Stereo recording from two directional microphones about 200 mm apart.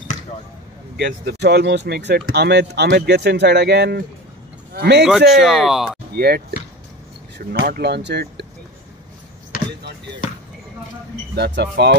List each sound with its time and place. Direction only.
0.9 s speech: 60° right (ahead or behind)
5.3 s speech: centre (ahead or behind)
6.1 s speech: 50° right (ahead or behind)
9.5 s basketball bounce: 45° left (ahead or behind)
11.3 s speech: 55° right (ahead or behind)